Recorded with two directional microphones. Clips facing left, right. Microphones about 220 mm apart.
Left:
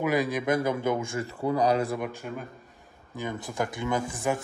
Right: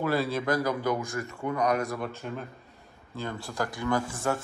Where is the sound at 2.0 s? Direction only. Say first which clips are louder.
Left 1 dB; 10° left (ahead or behind).